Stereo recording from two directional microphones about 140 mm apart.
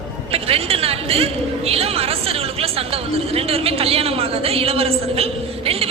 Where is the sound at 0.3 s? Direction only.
45° right (ahead or behind).